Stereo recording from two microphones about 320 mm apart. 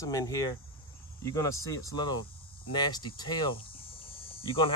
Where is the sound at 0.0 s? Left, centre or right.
Centre.